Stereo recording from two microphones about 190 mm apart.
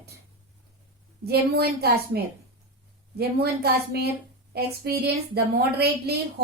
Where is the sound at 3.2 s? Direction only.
55° right (ahead or behind).